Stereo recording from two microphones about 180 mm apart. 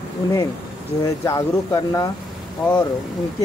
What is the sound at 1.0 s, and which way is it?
Speech, 15° left (ahead or behind).